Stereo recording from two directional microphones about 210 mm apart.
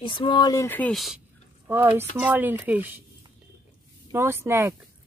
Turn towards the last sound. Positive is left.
turn(degrees=-10)  # may be behind; listen again after turning